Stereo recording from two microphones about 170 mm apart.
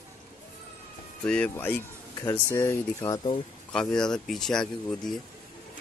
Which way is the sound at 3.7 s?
5° left (ahead or behind).